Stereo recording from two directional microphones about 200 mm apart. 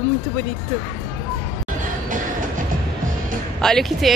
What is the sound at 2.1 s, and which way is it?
Music, 40° right (ahead or behind).